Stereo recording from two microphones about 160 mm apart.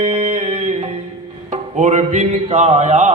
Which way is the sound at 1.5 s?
45° right (ahead or behind).